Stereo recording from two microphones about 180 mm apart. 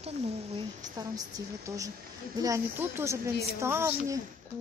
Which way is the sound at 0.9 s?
20° right (ahead or behind).